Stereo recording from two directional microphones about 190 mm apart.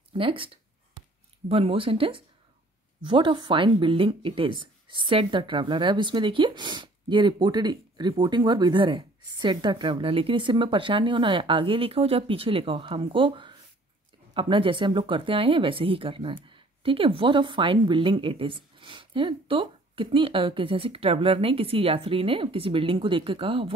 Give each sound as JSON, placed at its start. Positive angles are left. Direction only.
{"t": 0.2, "sound": "speech", "side_deg": -30}
{"t": 1.5, "sound": "speech", "side_deg": -30}